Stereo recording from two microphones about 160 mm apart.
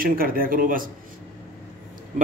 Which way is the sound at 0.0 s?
65° right (ahead or behind).